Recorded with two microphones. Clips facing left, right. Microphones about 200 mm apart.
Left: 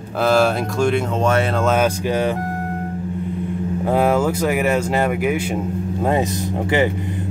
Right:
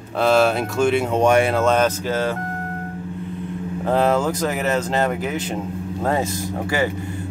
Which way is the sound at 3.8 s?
10° left (ahead or behind).